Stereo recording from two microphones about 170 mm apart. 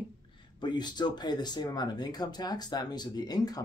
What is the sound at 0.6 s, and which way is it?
Speech, 25° left (ahead or behind).